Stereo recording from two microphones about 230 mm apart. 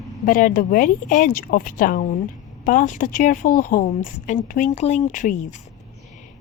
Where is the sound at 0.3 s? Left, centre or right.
Left.